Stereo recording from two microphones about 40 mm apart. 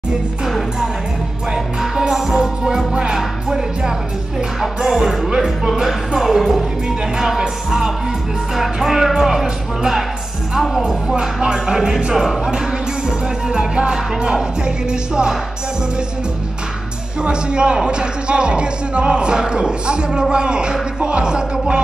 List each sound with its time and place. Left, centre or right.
1.8 s music: centre
2.9 s music: right
3.2 s music: centre
7.2 s speech: centre
11.4 s speech: centre
13.5 s speech: right
17.2 s speech: right